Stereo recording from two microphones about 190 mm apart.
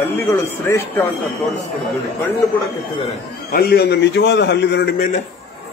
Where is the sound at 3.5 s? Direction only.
55° left (ahead or behind).